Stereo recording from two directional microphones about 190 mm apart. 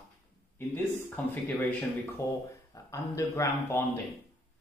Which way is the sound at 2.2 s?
15° left (ahead or behind).